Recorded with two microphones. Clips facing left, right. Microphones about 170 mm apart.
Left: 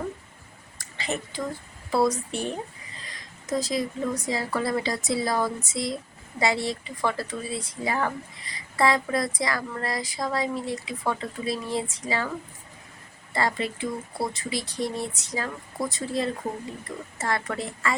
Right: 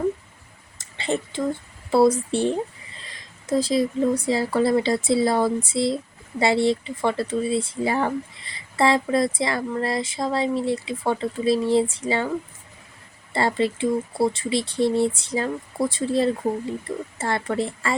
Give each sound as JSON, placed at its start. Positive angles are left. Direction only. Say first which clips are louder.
{"t": 0.8, "sound": "a sound", "louder": "right 6 dB", "side_deg": -30}
{"t": 1.9, "sound": "speech", "louder": "right 6 dB", "side_deg": -30}
{"t": 13.3, "sound": "speech", "louder": "right 5 dB", "side_deg": -30}